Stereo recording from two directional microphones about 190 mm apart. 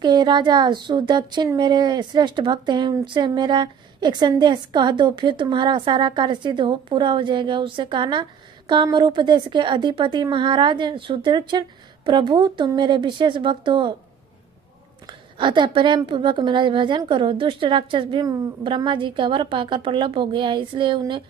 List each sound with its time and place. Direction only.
0.0 s speech: 20° right (ahead or behind)
15.0 s speech: 25° right (ahead or behind)